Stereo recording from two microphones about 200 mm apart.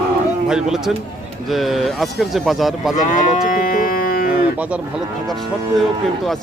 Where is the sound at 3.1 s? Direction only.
40° left (ahead or behind).